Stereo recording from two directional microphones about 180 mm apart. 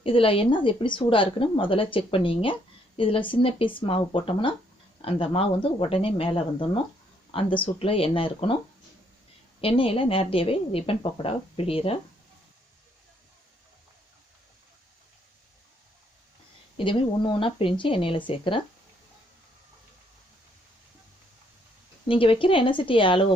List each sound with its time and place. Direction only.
0.0 s a woman's voice: 30° left (ahead or behind)
9.6 s a woman's voice: 30° left (ahead or behind)
16.7 s a woman's voice: 30° left (ahead or behind)
22.1 s a woman's voice: 30° left (ahead or behind)